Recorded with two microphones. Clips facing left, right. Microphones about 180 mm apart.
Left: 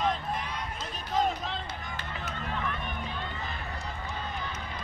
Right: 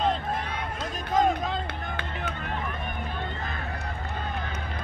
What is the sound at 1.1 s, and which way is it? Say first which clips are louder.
Run: right 5 dB; 50° right (ahead or behind).